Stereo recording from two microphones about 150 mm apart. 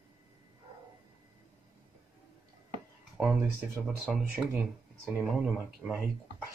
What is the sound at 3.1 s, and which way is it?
Speech, 5° right (ahead or behind).